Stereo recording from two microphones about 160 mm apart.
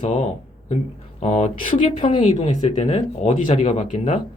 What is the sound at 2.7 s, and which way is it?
Speech, 45° left (ahead or behind).